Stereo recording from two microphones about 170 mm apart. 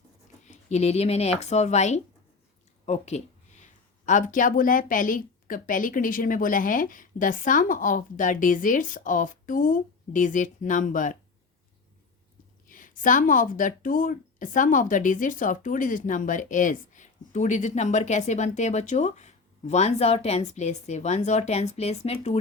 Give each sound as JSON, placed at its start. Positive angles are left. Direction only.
{"t": 0.4, "sound": "speech", "side_deg": 40}
{"t": 12.7, "sound": "speech", "side_deg": 50}